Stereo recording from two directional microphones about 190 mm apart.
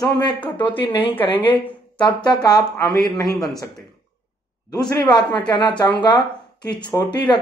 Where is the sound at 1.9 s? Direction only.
25° left (ahead or behind).